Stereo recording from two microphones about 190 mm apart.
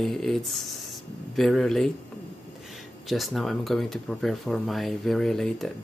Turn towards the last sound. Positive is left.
turn(degrees=0)  # may be behind; listen again after turning